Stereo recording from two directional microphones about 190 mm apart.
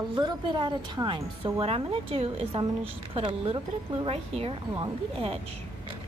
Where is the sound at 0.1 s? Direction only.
25° right (ahead or behind).